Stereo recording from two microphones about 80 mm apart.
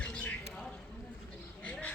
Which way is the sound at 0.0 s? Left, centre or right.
Centre.